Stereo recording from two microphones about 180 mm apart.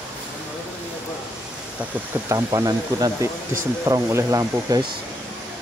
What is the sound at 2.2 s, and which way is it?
Speech, 20° right (ahead or behind).